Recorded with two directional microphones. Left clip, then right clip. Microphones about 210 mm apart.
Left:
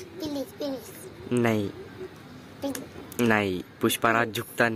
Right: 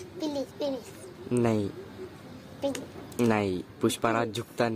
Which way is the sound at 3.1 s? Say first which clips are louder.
Left 3 dB; centre (ahead or behind).